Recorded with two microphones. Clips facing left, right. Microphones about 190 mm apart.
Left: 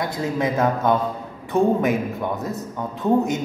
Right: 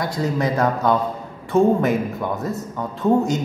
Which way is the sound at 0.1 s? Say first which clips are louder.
Right 1 dB; 20° left (ahead or behind).